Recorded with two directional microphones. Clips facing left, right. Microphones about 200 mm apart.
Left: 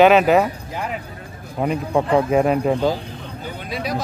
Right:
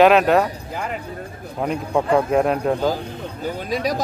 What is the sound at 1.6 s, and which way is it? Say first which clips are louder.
A man's voice: left 1 dB; centre (ahead or behind).